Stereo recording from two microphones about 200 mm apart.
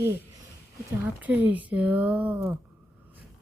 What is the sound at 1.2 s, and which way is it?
Speech, 10° right (ahead or behind).